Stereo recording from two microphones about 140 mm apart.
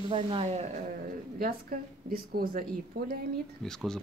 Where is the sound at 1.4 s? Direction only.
90° right.